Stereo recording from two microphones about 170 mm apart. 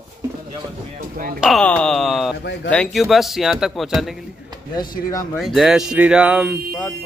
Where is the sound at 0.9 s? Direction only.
55° right (ahead or behind).